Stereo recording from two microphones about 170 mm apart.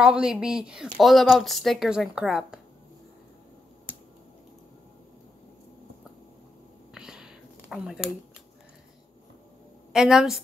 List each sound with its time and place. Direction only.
0.0 s speech: 5° right (ahead or behind)
6.9 s whispering: 5° right (ahead or behind)
9.9 s speech: 5° right (ahead or behind)